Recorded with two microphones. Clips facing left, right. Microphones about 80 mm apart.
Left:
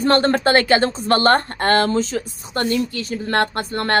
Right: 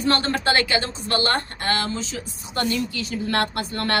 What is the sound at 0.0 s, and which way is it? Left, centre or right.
Speech, left.